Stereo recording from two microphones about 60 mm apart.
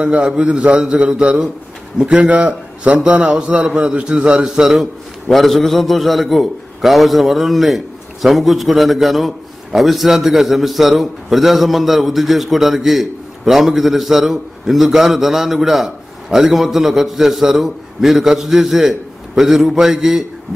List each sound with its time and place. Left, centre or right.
0.0 s a man's voice: centre
5.3 s a man's voice: centre